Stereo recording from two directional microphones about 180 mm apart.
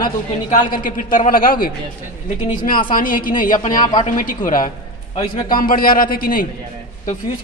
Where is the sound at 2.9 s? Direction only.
50° left (ahead or behind).